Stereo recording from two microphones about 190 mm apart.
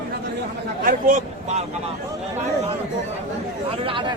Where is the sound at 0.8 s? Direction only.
45° right (ahead or behind).